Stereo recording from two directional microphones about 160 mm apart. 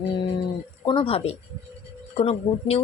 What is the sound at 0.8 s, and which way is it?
A woman's voice, 30° left (ahead or behind).